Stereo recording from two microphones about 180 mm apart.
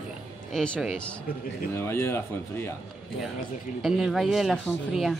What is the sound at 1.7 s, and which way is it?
Speech, 15° left (ahead or behind).